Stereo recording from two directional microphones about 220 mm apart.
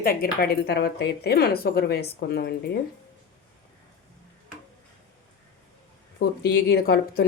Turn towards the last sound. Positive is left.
turn(degrees=45)  # may be behind; listen again after turning